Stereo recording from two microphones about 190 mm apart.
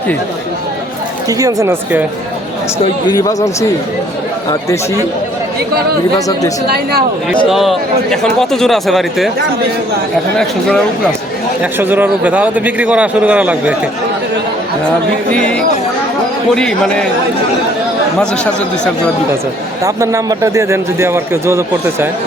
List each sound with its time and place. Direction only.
1.3 s a man's voice: 20° right (ahead or behind)
2.7 s speech: 20° left (ahead or behind)
6.1 s speech: 20° left (ahead or behind)
7.5 s a man's voice: centre (ahead or behind)
10.3 s a man's voice: 5° left (ahead or behind)
11.6 s a man's voice: 10° right (ahead or behind)
15.3 s a man's voice: 5° left (ahead or behind)
19.8 s a man's voice: 15° right (ahead or behind)